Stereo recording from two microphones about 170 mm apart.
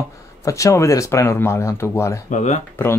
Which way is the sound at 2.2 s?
45° left (ahead or behind).